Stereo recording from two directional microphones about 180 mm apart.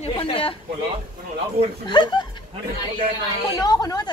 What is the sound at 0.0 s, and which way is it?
Speech, 30° left (ahead or behind).